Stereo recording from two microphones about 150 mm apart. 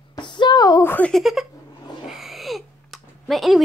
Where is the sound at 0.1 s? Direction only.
30° left (ahead or behind).